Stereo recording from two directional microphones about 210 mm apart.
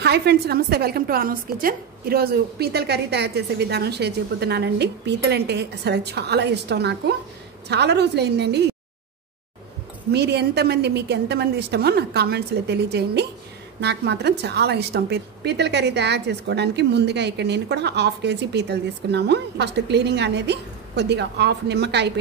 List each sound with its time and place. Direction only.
0.0 s a woman's voice: 50° right (ahead or behind)
10.1 s a woman's voice: 50° right (ahead or behind)